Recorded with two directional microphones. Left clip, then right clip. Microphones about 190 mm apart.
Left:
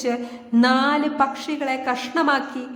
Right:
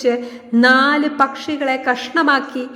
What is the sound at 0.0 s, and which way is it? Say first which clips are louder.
A woman's voice: right 7 dB; 10° right (ahead or behind).